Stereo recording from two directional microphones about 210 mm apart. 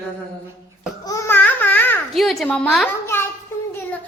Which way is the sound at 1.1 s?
10° left (ahead or behind).